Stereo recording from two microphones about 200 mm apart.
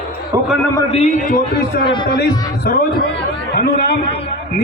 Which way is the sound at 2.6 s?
55° left (ahead or behind).